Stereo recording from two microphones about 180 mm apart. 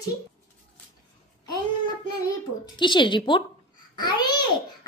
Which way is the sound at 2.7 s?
25° left (ahead or behind).